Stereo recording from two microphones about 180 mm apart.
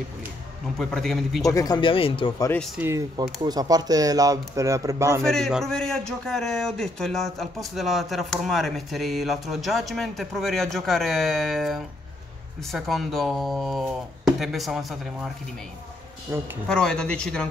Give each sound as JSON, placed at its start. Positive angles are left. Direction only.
{"t": 0.7, "sound": "a man's voice", "side_deg": 0}
{"t": 1.5, "sound": "speech", "side_deg": 20}
{"t": 2.5, "sound": "a man's voice", "side_deg": 0}
{"t": 2.8, "sound": "a man's voice", "side_deg": -15}
{"t": 5.2, "sound": "a man's voice", "side_deg": 5}
{"t": 16.3, "sound": "speech", "side_deg": -15}
{"t": 16.6, "sound": "a man's voice", "side_deg": 5}